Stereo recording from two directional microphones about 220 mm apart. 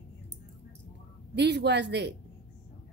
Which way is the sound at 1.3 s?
50° right (ahead or behind).